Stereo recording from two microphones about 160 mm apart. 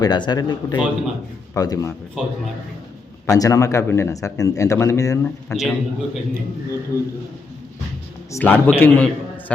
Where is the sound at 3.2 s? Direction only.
20° left (ahead or behind).